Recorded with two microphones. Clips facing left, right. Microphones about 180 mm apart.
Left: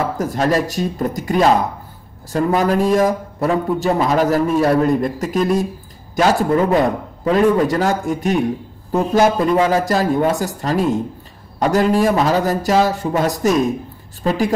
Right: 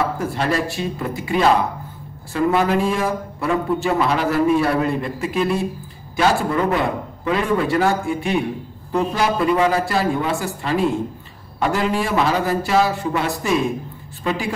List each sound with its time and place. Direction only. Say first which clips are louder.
0.2 s a man's voice: left 4 dB; 40° left (ahead or behind)